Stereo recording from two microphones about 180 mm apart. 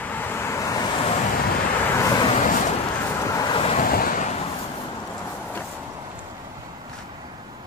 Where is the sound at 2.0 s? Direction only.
25° left (ahead or behind).